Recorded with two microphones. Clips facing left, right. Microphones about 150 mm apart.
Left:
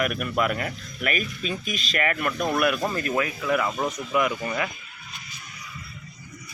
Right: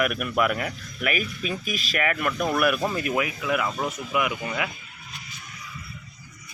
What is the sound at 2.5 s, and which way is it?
Speech, 20° left (ahead or behind).